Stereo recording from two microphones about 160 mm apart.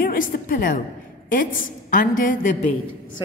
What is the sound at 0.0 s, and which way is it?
A woman's voice, 60° left (ahead or behind).